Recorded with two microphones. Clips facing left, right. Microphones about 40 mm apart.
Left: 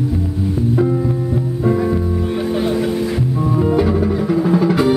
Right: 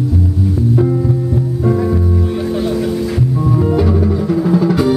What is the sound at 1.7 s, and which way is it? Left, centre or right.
Music, centre.